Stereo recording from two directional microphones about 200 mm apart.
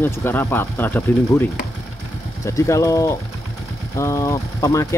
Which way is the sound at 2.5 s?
15° left (ahead or behind).